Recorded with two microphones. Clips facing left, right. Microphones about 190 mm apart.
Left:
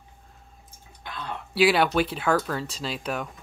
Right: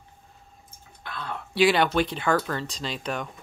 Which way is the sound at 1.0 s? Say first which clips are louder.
Even; 15° left (ahead or behind).